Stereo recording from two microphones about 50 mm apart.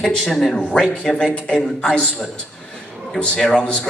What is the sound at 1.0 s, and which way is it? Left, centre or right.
Speech, centre.